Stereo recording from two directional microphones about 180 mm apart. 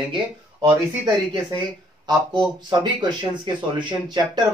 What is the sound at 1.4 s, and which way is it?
Speech, 25° right (ahead or behind).